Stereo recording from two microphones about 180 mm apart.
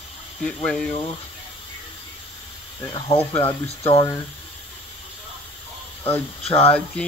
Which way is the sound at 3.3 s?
30° left (ahead or behind).